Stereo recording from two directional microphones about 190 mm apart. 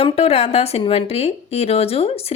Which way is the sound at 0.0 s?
30° left (ahead or behind).